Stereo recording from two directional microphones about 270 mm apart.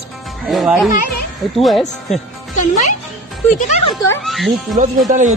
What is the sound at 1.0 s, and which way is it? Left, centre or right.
Children playing, left.